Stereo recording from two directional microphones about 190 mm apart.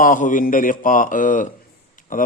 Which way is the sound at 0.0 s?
45° left (ahead or behind).